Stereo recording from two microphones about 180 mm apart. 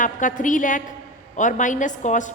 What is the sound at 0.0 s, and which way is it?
A woman's voice, 45° left (ahead or behind).